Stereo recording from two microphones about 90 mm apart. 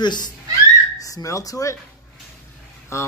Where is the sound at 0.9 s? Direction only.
40° left (ahead or behind).